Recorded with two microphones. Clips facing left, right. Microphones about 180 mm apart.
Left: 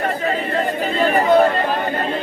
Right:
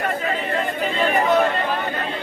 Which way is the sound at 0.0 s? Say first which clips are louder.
Left 3 dB; 40° left (ahead or behind).